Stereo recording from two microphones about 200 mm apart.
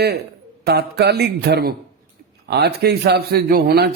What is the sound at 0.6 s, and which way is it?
A man's voice, 55° right (ahead or behind).